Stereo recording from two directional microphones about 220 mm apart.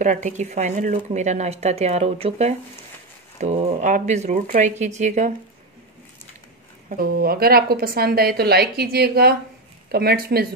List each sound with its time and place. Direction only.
0.0 s speech: 35° right (ahead or behind)
6.9 s a woman's voice: 45° right (ahead or behind)